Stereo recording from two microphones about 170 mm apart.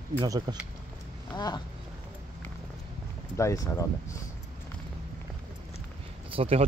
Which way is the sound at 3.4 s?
15° left (ahead or behind).